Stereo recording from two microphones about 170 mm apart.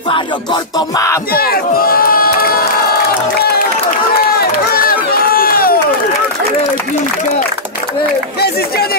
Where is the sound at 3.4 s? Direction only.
70° left (ahead or behind).